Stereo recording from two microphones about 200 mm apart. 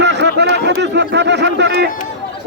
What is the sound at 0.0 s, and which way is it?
A man's voice, 60° right (ahead or behind).